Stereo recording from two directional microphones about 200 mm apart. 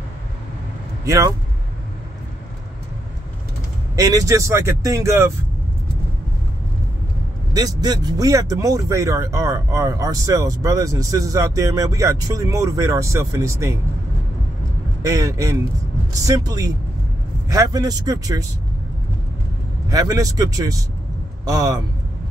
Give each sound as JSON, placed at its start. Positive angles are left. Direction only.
{"t": 1.0, "sound": "speech", "side_deg": -15}
{"t": 3.9, "sound": "speech", "side_deg": -15}
{"t": 7.5, "sound": "speech", "side_deg": -20}
{"t": 15.0, "sound": "speech", "side_deg": -15}
{"t": 19.9, "sound": "speech", "side_deg": -20}